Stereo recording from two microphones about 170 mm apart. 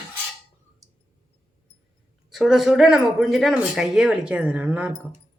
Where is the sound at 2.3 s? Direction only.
Centre (ahead or behind).